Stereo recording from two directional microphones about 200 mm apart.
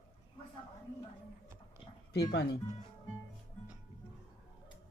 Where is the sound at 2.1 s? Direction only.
55° left (ahead or behind).